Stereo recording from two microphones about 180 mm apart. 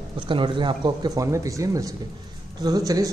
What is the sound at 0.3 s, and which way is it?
Speech, 25° right (ahead or behind).